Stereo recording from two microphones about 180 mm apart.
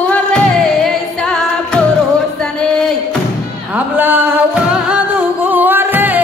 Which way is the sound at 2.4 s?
5° left (ahead or behind).